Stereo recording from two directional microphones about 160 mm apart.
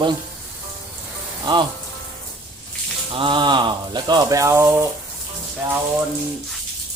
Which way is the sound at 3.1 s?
30° right (ahead or behind).